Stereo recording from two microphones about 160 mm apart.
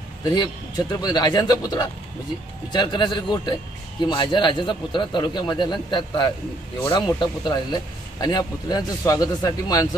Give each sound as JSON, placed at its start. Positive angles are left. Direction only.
{"t": 0.2, "sound": "a man's voice", "side_deg": 25}